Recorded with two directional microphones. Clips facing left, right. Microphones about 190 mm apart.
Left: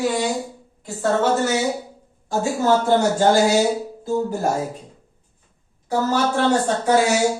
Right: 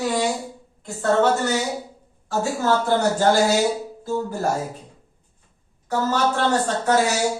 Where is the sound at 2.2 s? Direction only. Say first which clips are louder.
Left 2 dB; 15° left (ahead or behind).